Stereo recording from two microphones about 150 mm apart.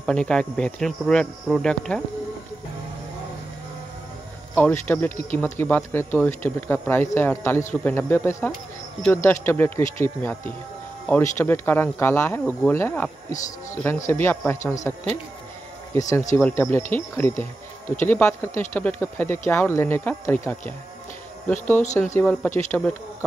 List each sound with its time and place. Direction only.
0.0 s speech: 5° left (ahead or behind)
4.6 s speech: 10° left (ahead or behind)
21.5 s speech: 10° left (ahead or behind)